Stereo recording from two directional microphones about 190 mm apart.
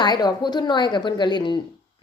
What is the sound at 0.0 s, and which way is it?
Speech, 20° left (ahead or behind).